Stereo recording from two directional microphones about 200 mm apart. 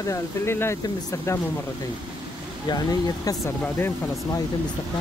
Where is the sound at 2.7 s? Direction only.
20° left (ahead or behind).